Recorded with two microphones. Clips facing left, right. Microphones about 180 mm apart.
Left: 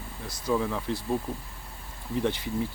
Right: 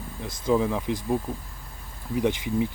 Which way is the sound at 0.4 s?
15° right (ahead or behind).